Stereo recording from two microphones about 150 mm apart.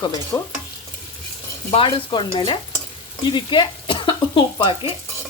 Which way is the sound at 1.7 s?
35° left (ahead or behind).